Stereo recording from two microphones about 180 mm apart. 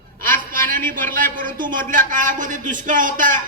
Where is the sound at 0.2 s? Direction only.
50° right (ahead or behind).